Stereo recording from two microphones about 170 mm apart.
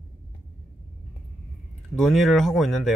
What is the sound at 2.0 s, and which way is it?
Speech, centre (ahead or behind).